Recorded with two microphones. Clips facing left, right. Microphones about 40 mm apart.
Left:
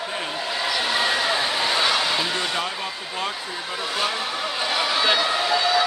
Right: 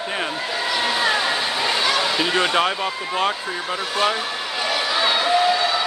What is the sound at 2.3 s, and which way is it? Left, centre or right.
Speech, right.